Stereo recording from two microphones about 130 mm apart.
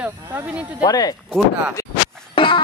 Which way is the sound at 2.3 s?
40° left (ahead or behind).